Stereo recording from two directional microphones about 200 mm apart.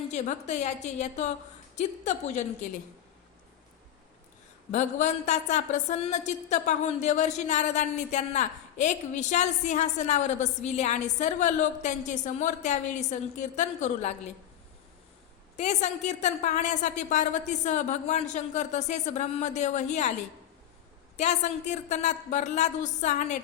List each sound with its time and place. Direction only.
0.1 s a woman's voice: 35° left (ahead or behind)
4.7 s a woman's voice: 35° left (ahead or behind)
15.5 s a woman's voice: 35° left (ahead or behind)
21.2 s a woman's voice: 35° left (ahead or behind)